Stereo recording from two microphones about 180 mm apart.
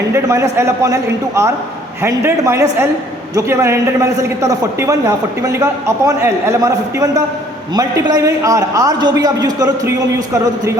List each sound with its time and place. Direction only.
0.1 s a man's voice: 15° right (ahead or behind)
2.0 s a man's voice: 15° right (ahead or behind)